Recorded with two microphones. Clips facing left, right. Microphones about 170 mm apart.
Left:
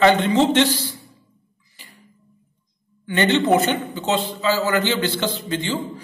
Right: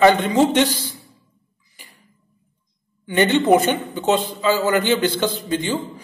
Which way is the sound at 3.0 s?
15° right (ahead or behind).